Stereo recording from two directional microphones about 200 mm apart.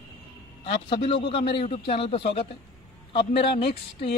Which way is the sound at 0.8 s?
25° left (ahead or behind).